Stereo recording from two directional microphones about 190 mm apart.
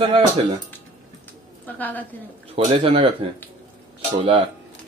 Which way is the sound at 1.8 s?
10° left (ahead or behind).